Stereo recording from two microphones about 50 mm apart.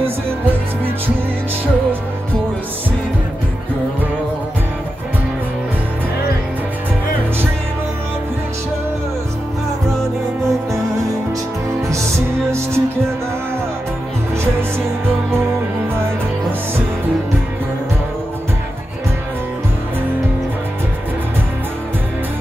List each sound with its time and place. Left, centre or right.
12.4 s music: right